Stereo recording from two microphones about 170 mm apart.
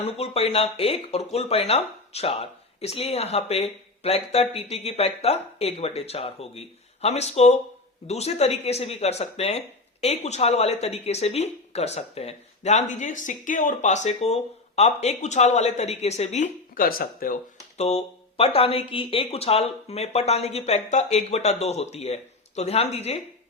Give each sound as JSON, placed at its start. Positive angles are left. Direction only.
{"t": 0.0, "sound": "speech", "side_deg": 35}
{"t": 17.7, "sound": "speech", "side_deg": 40}